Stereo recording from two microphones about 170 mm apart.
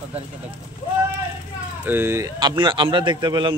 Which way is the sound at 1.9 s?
15° right (ahead or behind).